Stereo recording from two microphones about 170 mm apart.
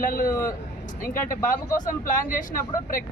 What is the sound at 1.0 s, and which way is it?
Speech, 55° left (ahead or behind).